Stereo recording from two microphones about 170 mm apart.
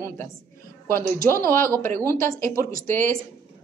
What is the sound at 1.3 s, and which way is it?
Speech, 15° left (ahead or behind).